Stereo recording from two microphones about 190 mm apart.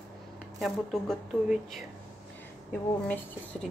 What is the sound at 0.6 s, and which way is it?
Speech, centre (ahead or behind).